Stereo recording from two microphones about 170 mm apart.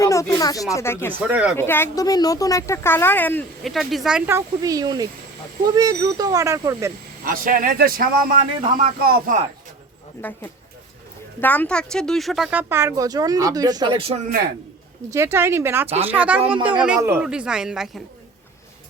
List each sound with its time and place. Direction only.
0.0 s speech: 20° left (ahead or behind)
1.3 s speech: 10° right (ahead or behind)
1.5 s speech: 15° left (ahead or behind)
3.7 s speech: centre (ahead or behind)
4.3 s speech: 20° right (ahead or behind)
7.3 s speech: 55° right (ahead or behind)
10.2 s speech: 10° left (ahead or behind); by 14.2 s 30° right (ahead or behind)
15.1 s speech: 15° right (ahead or behind)